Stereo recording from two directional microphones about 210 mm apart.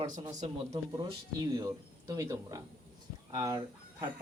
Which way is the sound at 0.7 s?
20° right (ahead or behind).